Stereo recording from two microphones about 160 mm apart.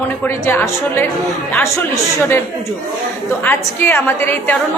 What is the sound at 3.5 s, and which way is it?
A woman's voice, 15° left (ahead or behind).